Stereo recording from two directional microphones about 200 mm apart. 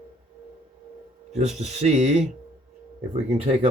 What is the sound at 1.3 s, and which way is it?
Speech, 35° right (ahead or behind).